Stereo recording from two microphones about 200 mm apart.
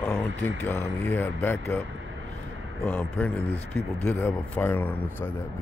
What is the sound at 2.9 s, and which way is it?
A man's voice, 10° left (ahead or behind).